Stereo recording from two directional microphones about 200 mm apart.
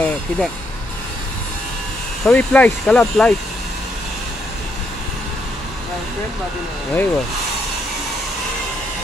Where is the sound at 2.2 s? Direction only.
5° left (ahead or behind).